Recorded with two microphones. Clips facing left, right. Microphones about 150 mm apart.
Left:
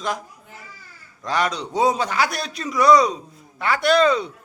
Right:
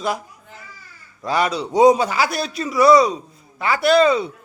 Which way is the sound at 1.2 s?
5° right (ahead or behind).